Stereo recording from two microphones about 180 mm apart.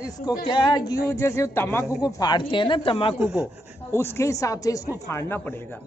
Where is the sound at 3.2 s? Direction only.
5° right (ahead or behind).